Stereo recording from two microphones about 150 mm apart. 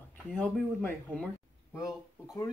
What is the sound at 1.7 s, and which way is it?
Speech, 20° left (ahead or behind).